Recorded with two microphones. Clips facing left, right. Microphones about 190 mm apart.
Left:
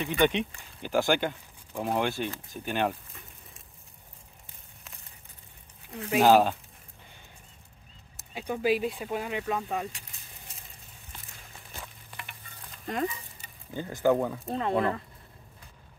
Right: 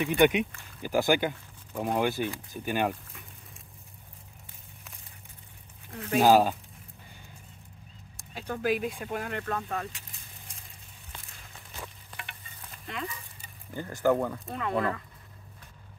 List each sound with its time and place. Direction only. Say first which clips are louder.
0.0 s speech: right 3 dB; 10° right (ahead or behind)
5.9 s speech: even; 10° left (ahead or behind)
6.2 s speech: even; 10° right (ahead or behind)
8.2 s speech: left 2 dB; 10° left (ahead or behind)
12.9 s speech: left 6 dB; 40° left (ahead or behind)
13.7 s speech: left 1 dB; 15° left (ahead or behind)
14.5 s speech: left 4 dB; 30° left (ahead or behind)